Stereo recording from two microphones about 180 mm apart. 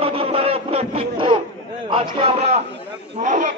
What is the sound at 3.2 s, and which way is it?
Speech, 45° right (ahead or behind).